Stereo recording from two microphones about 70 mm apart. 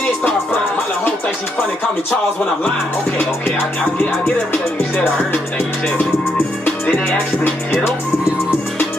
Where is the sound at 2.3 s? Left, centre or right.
Centre.